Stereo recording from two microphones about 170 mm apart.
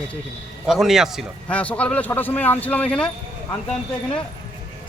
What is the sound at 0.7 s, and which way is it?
A man's voice, centre (ahead or behind).